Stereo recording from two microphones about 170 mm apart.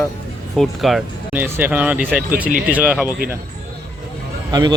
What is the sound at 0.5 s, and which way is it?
Speech, centre (ahead or behind).